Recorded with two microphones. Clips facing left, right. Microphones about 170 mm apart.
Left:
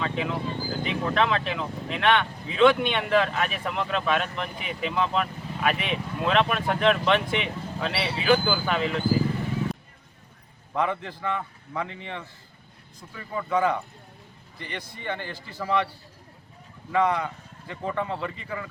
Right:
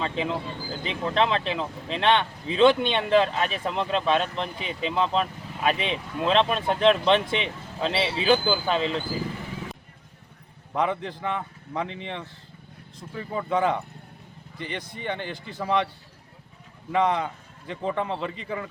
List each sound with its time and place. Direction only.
0.0 s speech: 25° right (ahead or behind)
10.8 s speech: 20° right (ahead or behind)
16.9 s speech: 20° right (ahead or behind)